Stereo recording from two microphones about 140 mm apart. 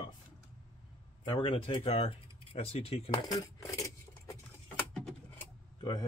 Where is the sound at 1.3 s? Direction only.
40° left (ahead or behind).